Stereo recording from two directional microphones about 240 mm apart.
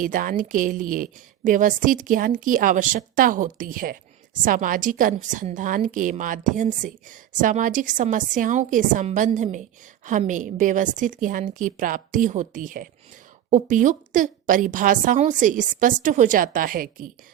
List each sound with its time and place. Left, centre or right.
0.0 s a woman's voice: right